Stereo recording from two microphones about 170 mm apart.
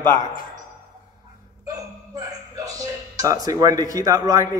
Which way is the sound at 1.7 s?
20° right (ahead or behind).